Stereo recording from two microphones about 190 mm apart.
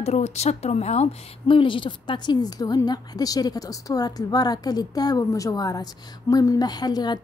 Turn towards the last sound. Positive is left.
turn(degrees=20)  # may be behind; listen again after turning